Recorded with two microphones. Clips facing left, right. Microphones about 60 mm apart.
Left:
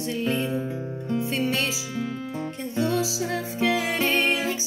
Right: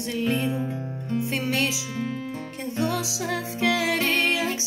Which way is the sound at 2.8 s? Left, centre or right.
Right.